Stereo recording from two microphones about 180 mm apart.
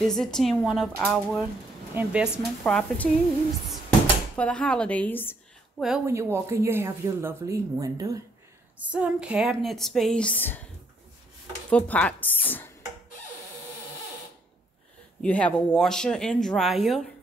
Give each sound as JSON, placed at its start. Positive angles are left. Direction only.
{"t": 0.0, "sound": "speech", "side_deg": 0}
{"t": 2.6, "sound": "speech", "side_deg": 5}
{"t": 4.4, "sound": "a woman's voice", "side_deg": 5}
{"t": 5.8, "sound": "speech", "side_deg": 0}
{"t": 6.0, "sound": "speech", "side_deg": -15}
{"t": 8.7, "sound": "speech", "side_deg": -5}
{"t": 11.7, "sound": "a woman's voice", "side_deg": 5}
{"t": 15.2, "sound": "speech", "side_deg": 5}